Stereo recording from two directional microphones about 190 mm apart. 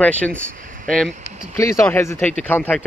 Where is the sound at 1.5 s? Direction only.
15° left (ahead or behind).